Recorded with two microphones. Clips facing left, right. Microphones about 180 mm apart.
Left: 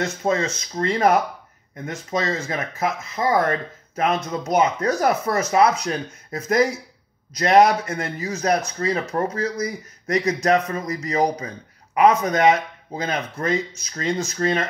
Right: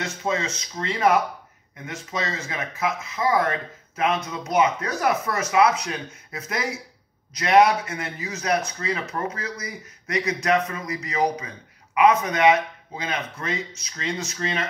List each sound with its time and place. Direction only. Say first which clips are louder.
0.0 s speech: left 5 dB; 45° left (ahead or behind)